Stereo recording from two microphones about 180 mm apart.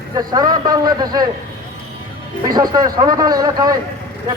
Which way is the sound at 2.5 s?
20° right (ahead or behind).